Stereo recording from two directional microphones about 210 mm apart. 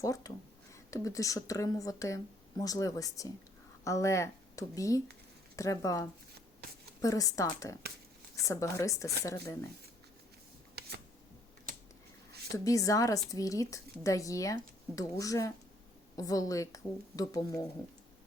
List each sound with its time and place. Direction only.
0.0 s a woman's voice: 15° left (ahead or behind)
10.8 s camera: 50° right (ahead or behind)
12.5 s a woman's voice: 15° left (ahead or behind)